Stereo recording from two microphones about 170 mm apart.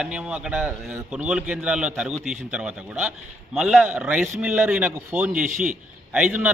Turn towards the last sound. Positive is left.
turn(degrees=-5)  # may be behind; listen again after turning